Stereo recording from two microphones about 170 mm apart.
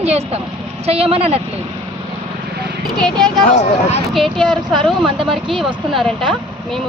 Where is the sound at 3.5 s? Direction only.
40° left (ahead or behind).